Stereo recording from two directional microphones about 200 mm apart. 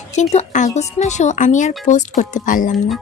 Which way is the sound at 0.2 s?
35° left (ahead or behind).